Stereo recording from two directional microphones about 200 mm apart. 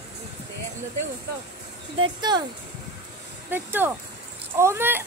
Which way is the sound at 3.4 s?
10° right (ahead or behind).